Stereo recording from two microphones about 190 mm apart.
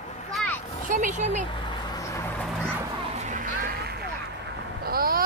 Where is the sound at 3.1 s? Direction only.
40° right (ahead or behind).